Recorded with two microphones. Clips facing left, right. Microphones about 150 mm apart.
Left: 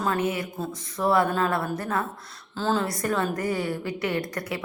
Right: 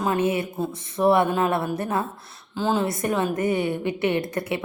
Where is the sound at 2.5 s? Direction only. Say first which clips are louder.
Right 2 dB; 15° right (ahead or behind).